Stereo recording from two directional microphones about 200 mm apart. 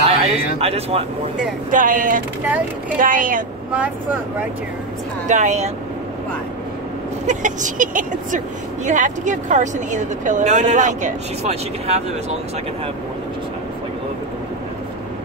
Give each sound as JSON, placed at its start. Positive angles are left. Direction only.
{"t": 0.1, "sound": "a man's voice", "side_deg": -30}
{"t": 1.7, "sound": "speech", "side_deg": -40}
{"t": 3.7, "sound": "speech", "side_deg": -5}
{"t": 5.3, "sound": "speech", "side_deg": -35}
{"t": 7.2, "sound": "speech", "side_deg": -40}